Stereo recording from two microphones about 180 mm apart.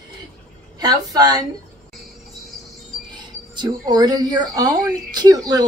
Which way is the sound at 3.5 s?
25° right (ahead or behind).